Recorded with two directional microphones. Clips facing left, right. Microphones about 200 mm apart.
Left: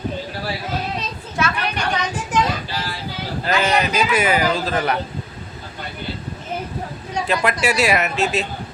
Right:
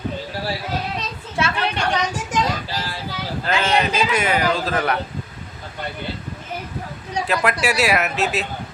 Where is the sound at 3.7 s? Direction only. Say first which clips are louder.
Even; 30° right (ahead or behind).